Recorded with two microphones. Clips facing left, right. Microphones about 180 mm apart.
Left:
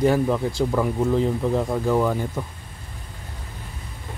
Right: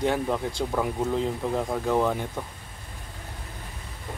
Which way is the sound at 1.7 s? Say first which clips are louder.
Left 3 dB; centre (ahead or behind).